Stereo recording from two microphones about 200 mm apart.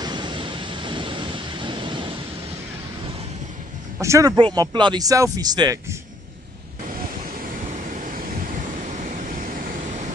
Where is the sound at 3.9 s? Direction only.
15° right (ahead or behind).